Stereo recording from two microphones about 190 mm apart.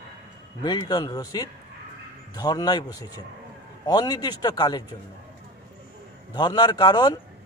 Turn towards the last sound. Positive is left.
turn(degrees=20)  # may be behind; listen again after turning